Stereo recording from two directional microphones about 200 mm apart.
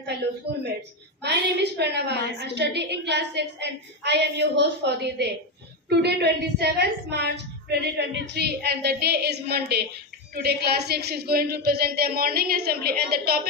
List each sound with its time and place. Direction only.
0.5 s a woman's voice: 55° right (ahead or behind)